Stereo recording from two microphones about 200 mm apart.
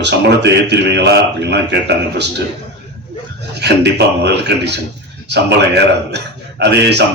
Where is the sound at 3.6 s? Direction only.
55° right (ahead or behind).